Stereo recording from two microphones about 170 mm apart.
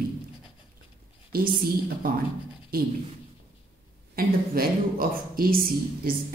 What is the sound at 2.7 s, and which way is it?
Speech, 60° right (ahead or behind).